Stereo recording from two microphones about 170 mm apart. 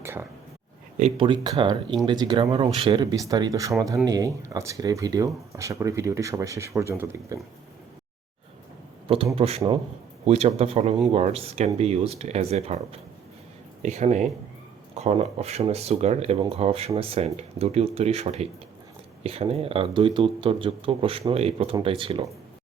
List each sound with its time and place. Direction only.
0.0 s whispering: 15° right (ahead or behind)
1.1 s speech: 30° right (ahead or behind); by 7.3 s 15° right (ahead or behind)
9.3 s speech: 35° right (ahead or behind)